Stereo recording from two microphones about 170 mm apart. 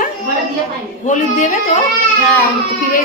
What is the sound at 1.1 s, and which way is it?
Speech, 45° left (ahead or behind).